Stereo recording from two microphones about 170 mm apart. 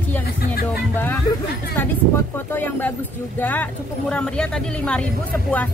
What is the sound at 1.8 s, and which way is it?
Speech, 10° left (ahead or behind).